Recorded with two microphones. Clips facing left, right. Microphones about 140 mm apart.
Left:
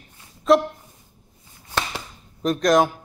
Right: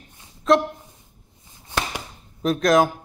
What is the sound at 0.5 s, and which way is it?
Speech, centre (ahead or behind).